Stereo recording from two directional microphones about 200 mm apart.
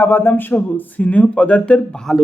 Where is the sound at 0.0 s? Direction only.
10° left (ahead or behind).